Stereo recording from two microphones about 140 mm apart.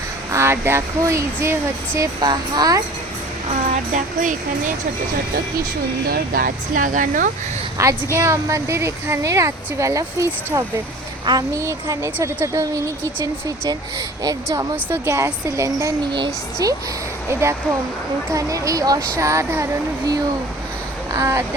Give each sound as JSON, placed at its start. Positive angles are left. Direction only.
{"t": 0.3, "sound": "speech", "side_deg": -20}
{"t": 2.2, "sound": "speech", "side_deg": -30}
{"t": 3.9, "sound": "speech", "side_deg": -65}
{"t": 6.1, "sound": "speech", "side_deg": -90}
{"t": 7.8, "sound": "speech", "side_deg": -20}
{"t": 14.3, "sound": "speech", "side_deg": -25}
{"t": 18.3, "sound": "speech", "side_deg": -25}
{"t": 21.1, "sound": "speech", "side_deg": -20}